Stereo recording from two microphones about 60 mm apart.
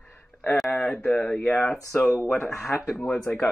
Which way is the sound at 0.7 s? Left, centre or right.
Centre.